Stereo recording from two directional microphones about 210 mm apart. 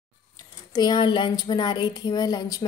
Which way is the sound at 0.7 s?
20° left (ahead or behind).